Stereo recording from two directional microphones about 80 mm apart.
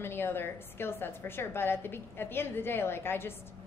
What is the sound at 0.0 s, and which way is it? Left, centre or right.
A woman's voice, left.